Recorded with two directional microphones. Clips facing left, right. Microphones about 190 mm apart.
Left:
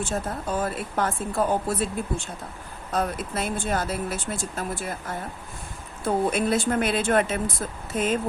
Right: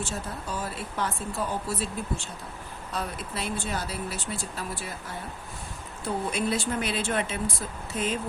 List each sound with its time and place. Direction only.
0.0 s speech: 50° left (ahead or behind)